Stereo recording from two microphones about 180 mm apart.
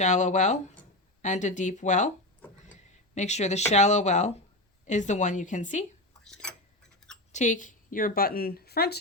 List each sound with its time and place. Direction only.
0.0 s speech: 40° left (ahead or behind)
3.2 s speech: 40° left (ahead or behind)
7.0 s a sound: centre (ahead or behind)
7.3 s a woman's voice: 45° left (ahead or behind); by 9.0 s 60° left (ahead or behind)